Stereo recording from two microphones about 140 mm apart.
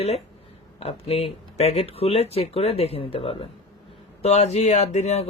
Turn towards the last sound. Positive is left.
turn(degrees=50)  # may be behind; listen again after turning